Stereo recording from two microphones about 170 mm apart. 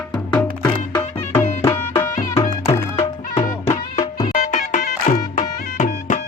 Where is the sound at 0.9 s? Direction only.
15° left (ahead or behind).